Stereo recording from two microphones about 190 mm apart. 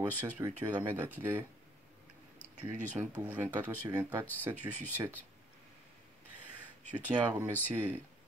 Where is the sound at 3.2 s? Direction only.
10° right (ahead or behind).